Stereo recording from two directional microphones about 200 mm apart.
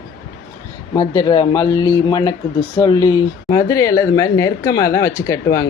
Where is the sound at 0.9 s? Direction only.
20° left (ahead or behind).